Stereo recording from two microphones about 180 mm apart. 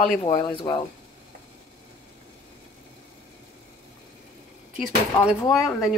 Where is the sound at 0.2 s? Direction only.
20° left (ahead or behind).